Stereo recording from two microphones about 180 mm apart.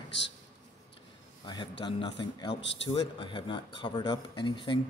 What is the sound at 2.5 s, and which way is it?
Speech, 80° left.